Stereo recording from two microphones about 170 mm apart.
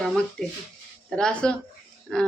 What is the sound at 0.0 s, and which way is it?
Speech, centre (ahead or behind).